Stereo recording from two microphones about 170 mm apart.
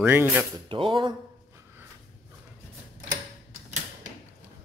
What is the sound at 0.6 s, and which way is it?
Speech, 30° right (ahead or behind).